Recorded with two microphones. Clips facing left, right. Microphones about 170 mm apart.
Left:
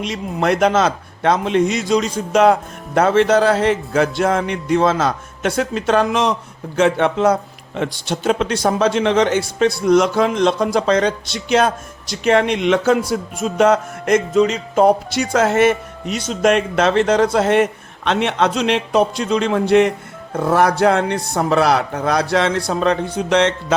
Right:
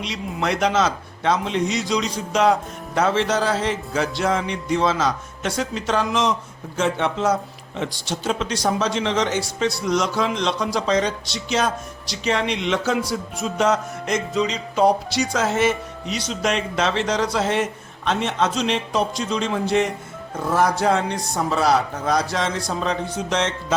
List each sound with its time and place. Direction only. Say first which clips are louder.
0.0 s speech: left 5 dB; 50° left (ahead or behind); by 23.7 s 65° left (ahead or behind)